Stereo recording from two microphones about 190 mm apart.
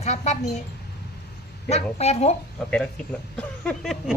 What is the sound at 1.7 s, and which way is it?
Speech, 35° left (ahead or behind).